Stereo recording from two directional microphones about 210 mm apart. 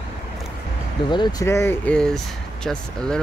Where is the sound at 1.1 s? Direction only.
15° left (ahead or behind).